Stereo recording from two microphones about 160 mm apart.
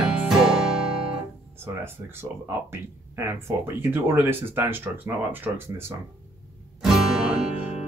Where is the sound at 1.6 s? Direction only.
15° right (ahead or behind).